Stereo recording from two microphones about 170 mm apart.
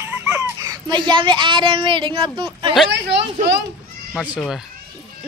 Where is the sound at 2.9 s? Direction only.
90° right.